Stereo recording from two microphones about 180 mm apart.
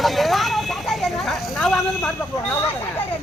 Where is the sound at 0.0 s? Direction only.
Centre (ahead or behind).